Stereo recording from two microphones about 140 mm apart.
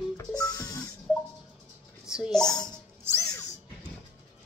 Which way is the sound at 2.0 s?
5° right (ahead or behind).